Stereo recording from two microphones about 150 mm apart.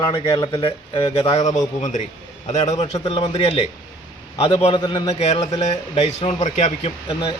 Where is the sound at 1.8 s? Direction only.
55° left (ahead or behind).